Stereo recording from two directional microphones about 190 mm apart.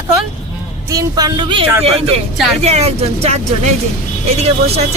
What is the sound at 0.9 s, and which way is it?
Speech, 20° right (ahead or behind).